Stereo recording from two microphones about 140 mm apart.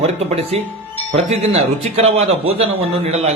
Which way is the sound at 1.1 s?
50° right (ahead or behind).